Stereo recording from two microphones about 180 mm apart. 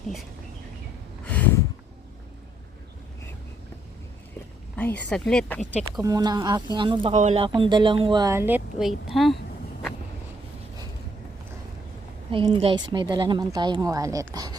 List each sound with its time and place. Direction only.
1.2 s a sound: 10° left (ahead or behind)
4.9 s speech: 5° left (ahead or behind)
6.0 s a woman's voice: 20° right (ahead or behind)
7.1 s speech: 40° right (ahead or behind)
7.4 s a woman's voice: 25° right (ahead or behind); by 9.4 s centre (ahead or behind)
12.3 s a woman's voice: 30° right (ahead or behind)